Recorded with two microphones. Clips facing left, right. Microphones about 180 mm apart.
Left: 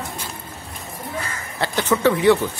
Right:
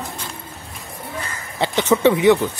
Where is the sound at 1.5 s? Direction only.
20° right (ahead or behind).